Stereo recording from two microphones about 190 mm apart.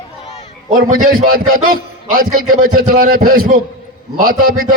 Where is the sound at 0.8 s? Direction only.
45° right (ahead or behind).